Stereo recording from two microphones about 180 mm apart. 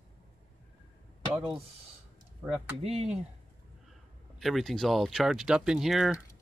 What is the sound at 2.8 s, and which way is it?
Speech, 35° right (ahead or behind).